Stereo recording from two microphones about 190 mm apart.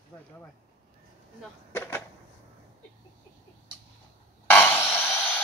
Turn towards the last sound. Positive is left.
turn(degrees=10)  # may be behind; listen again after turning